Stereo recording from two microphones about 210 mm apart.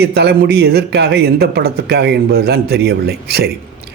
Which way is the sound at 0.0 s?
50° right (ahead or behind).